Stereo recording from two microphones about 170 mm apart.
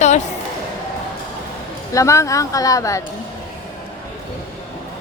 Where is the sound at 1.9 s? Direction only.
15° left (ahead or behind).